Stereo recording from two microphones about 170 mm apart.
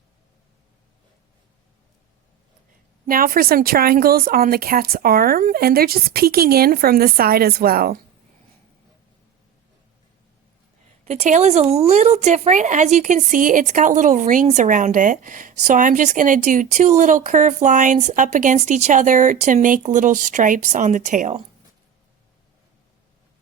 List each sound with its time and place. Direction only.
3.1 s speech: 55° right (ahead or behind)
11.0 s speech: 40° right (ahead or behind)